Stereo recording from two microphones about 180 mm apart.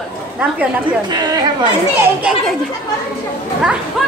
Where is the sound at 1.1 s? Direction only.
25° right (ahead or behind).